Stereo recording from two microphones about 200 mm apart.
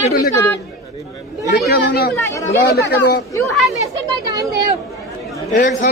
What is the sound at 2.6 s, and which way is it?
Speech, 55° left (ahead or behind).